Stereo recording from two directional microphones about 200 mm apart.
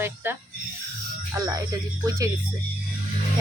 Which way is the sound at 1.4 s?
20° right (ahead or behind).